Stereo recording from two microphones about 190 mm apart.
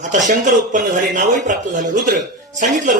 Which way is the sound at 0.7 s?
45° right (ahead or behind).